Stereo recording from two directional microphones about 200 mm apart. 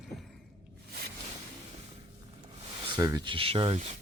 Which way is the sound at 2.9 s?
15° right (ahead or behind).